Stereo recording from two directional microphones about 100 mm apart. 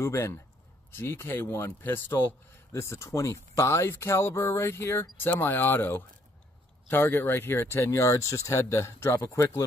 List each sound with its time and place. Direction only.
0.0 s a man's voice: 25° left (ahead or behind)